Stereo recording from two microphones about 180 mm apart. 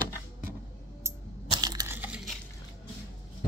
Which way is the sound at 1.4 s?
25° right (ahead or behind).